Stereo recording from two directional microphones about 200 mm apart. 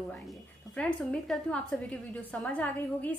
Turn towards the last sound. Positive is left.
turn(degrees=5)  # may be behind; listen again after turning